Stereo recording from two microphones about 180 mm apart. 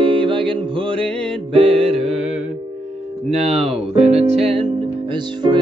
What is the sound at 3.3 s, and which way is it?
Speech, 35° right (ahead or behind).